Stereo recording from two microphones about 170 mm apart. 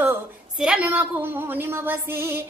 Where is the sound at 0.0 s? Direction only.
5° right (ahead or behind).